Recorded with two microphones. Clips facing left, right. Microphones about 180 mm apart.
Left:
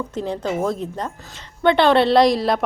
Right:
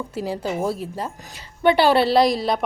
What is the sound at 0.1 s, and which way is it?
A woman's voice, 5° right (ahead or behind).